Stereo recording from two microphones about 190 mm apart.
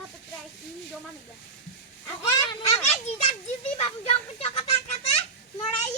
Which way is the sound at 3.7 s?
35° left (ahead or behind).